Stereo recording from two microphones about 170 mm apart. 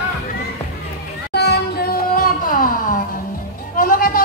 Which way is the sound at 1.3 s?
75° left (ahead or behind).